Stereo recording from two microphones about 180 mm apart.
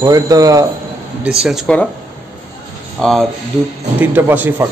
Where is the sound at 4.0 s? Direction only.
10° right (ahead or behind).